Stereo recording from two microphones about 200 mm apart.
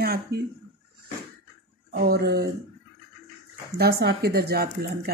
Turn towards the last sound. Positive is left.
turn(degrees=-50)  # may be behind; listen again after turning